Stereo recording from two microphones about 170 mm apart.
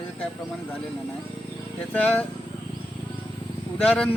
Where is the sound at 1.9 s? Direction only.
10° left (ahead or behind).